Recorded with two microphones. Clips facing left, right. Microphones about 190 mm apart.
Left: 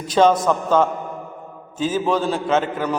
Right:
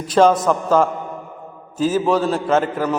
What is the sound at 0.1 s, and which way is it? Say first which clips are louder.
A man's voice: right 1 dB; 5° right (ahead or behind).